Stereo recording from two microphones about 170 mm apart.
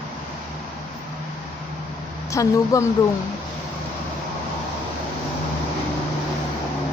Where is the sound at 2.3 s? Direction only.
20° left (ahead or behind).